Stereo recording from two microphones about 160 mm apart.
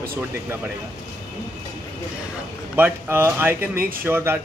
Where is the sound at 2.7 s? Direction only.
15° right (ahead or behind).